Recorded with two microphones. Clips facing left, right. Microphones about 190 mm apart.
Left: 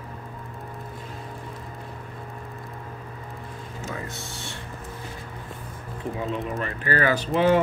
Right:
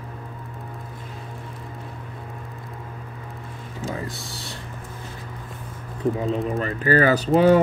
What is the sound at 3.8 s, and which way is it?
Mechanisms, 35° right (ahead or behind).